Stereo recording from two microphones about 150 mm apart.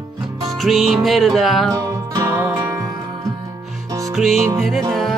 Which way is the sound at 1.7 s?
25° right (ahead or behind).